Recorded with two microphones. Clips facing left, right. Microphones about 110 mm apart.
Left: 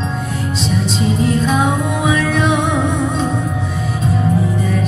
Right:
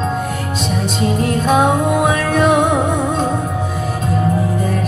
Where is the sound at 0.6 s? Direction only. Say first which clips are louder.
Even; 50° right (ahead or behind).